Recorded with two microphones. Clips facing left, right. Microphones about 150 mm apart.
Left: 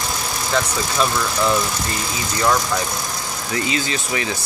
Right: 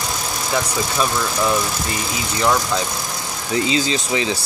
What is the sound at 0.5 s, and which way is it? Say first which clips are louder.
Speech: even; 10° right (ahead or behind).